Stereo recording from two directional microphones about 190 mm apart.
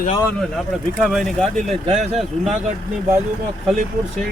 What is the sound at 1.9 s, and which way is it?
Speech, 30° right (ahead or behind).